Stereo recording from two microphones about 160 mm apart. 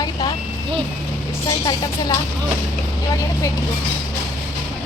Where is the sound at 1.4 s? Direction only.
25° left (ahead or behind).